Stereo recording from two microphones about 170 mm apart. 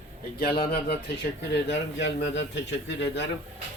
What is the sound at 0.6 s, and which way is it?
Speech, 65° left (ahead or behind).